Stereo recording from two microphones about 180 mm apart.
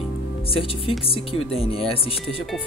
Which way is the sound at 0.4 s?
30° left (ahead or behind).